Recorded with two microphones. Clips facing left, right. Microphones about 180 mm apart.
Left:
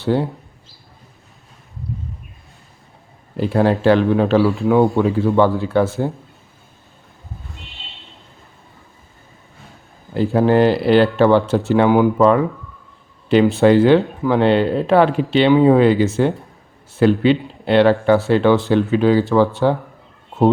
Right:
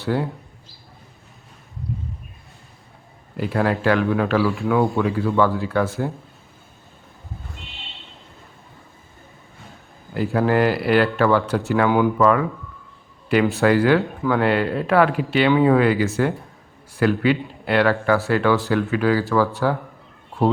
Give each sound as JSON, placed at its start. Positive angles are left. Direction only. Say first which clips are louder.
{"t": 0.1, "sound": "speech", "louder": "left 4 dB", "side_deg": 30}
{"t": 3.3, "sound": "speech", "louder": "left 5 dB", "side_deg": 30}
{"t": 10.2, "sound": "speech", "louder": "left 5 dB", "side_deg": 25}
{"t": 20.3, "sound": "a sound", "louder": "left 5 dB", "side_deg": 25}